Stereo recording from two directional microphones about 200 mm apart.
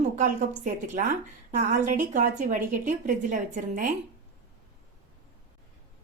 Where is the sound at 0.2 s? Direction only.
40° right (ahead or behind).